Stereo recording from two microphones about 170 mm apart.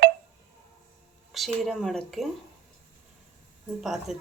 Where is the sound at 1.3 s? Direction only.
Centre (ahead or behind).